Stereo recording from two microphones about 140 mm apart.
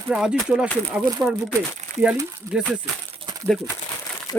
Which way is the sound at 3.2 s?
30° right (ahead or behind).